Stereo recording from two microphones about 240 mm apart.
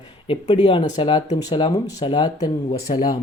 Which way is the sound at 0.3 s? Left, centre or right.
Left.